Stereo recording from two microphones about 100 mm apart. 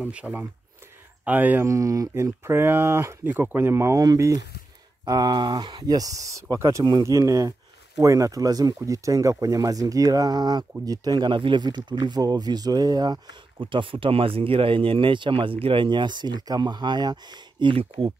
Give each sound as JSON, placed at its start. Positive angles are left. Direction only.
{"t": 0.0, "sound": "speech", "side_deg": -10}
{"t": 1.6, "sound": "speech", "side_deg": -35}
{"t": 5.9, "sound": "speech", "side_deg": -35}